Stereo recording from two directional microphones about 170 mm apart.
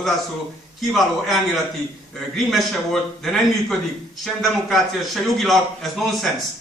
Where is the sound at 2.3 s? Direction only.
Centre (ahead or behind).